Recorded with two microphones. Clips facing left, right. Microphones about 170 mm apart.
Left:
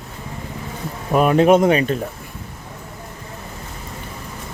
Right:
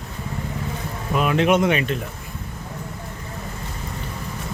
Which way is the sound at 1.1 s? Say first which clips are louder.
Left 6 dB; 45° left (ahead or behind).